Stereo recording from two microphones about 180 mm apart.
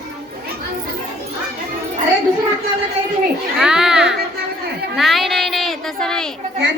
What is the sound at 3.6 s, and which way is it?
Music, 5° right (ahead or behind).